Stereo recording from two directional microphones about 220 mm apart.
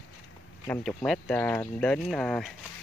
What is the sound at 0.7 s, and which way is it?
Speech, centre (ahead or behind).